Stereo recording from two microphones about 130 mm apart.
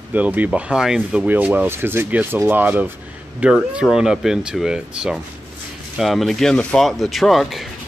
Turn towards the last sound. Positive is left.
turn(degrees=0)  # may be behind; listen again after turning